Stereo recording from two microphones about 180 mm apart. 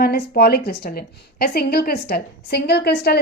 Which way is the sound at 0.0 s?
60° left (ahead or behind).